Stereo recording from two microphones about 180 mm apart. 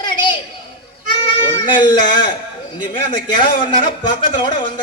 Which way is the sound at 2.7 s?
25° left (ahead or behind).